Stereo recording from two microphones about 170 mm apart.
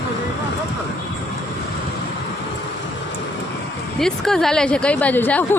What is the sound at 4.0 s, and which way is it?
Speech, 5° left (ahead or behind).